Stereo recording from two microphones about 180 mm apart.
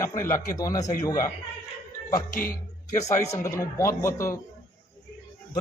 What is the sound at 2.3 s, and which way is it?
Speech, 50° left (ahead or behind).